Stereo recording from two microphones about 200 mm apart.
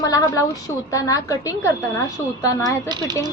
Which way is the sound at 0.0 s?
15° left (ahead or behind).